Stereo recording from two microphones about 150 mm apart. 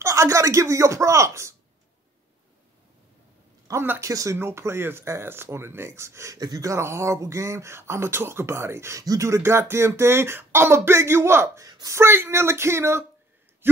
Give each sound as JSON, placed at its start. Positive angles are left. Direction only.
{"t": 0.0, "sound": "speech", "side_deg": -20}
{"t": 3.6, "sound": "speech", "side_deg": -15}